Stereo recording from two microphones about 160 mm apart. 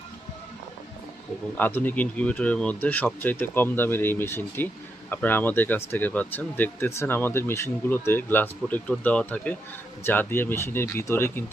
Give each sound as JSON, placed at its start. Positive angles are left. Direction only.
{"t": 1.5, "sound": "speech", "side_deg": 10}